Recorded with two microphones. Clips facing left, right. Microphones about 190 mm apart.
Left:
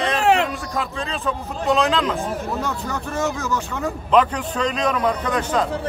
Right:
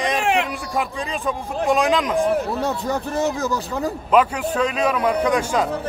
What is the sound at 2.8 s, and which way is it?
Speech, 35° right (ahead or behind).